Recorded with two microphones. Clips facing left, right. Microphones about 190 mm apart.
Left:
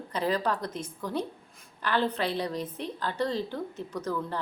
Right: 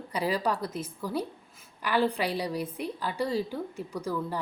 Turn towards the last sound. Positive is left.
turn(degrees=-10)  # may be behind; listen again after turning